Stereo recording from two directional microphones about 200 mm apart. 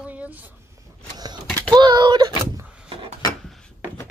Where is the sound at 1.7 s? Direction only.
20° right (ahead or behind).